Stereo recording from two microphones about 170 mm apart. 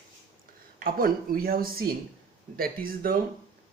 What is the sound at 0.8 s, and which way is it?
Speech, 60° right (ahead or behind).